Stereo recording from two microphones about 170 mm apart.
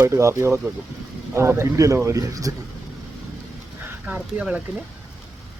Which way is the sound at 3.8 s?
5° right (ahead or behind).